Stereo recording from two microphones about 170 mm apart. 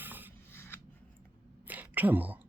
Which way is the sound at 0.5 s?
15° left (ahead or behind).